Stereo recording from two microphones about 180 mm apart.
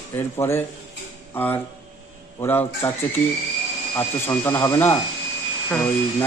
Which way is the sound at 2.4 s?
15° left (ahead or behind).